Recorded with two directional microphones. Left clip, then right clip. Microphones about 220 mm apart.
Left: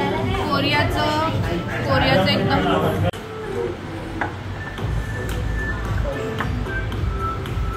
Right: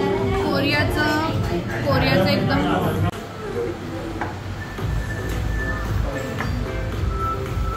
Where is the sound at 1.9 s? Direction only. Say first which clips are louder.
Left 1 dB; 5° left (ahead or behind).